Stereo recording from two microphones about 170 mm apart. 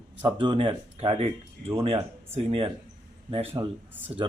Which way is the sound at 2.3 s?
35° right (ahead or behind).